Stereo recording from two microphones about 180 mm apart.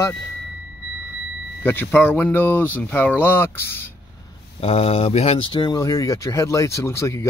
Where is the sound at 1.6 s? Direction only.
10° left (ahead or behind).